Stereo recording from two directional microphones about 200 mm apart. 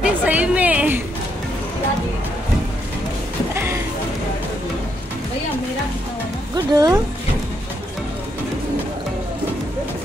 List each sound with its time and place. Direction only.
0.0 s music: 5° right (ahead or behind)
3.5 s music: 10° right (ahead or behind)
6.5 s music: 20° right (ahead or behind)